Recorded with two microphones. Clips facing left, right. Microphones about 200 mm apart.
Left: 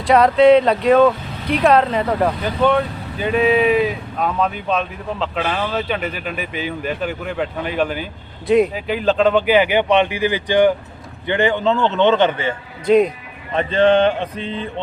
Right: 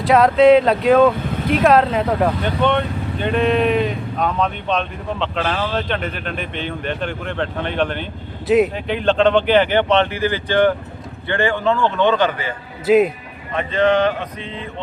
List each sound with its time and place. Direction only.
0.0 s a man's voice: centre (ahead or behind); by 12.5 s 25° left (ahead or behind)
12.8 s speech: 5° right (ahead or behind)
13.5 s speech: 30° left (ahead or behind)